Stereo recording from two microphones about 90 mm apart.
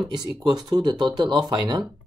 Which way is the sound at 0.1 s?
55° right (ahead or behind).